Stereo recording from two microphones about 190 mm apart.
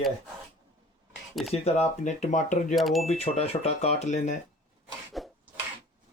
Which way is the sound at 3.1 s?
35° left (ahead or behind).